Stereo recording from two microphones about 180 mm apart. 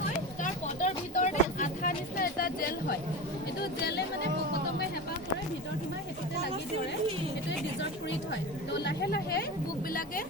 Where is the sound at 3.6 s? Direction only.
65° left (ahead or behind).